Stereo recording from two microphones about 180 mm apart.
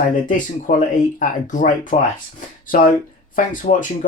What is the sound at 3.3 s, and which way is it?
Speech, 45° left (ahead or behind).